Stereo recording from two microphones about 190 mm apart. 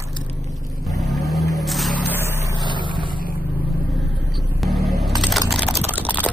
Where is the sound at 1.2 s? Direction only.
Centre (ahead or behind).